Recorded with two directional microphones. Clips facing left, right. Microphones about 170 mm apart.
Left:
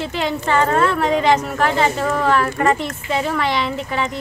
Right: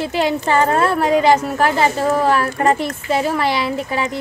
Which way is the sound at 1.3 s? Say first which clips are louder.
Right 2 dB; 35° right (ahead or behind).